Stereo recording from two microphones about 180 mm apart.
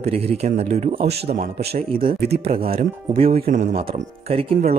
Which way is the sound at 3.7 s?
35° right (ahead or behind).